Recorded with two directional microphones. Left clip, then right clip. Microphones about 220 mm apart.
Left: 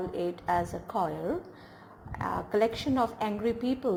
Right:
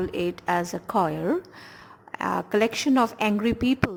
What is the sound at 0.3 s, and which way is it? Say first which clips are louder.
A woman's voice: right 3 dB; 30° right (ahead or behind).